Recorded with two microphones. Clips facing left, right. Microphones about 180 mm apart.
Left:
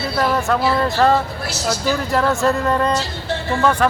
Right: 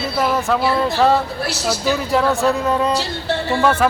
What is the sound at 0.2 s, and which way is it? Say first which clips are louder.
Speech: even; centre (ahead or behind).